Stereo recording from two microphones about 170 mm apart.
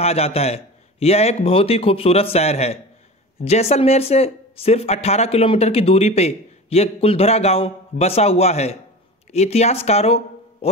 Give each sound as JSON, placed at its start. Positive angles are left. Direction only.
{"t": 0.0, "sound": "speech", "side_deg": 35}